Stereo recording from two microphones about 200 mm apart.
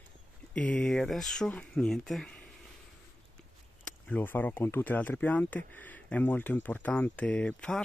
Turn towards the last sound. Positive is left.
turn(degrees=5)  # may be behind; listen again after turning